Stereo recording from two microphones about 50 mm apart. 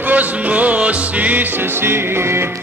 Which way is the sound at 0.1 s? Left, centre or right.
Right.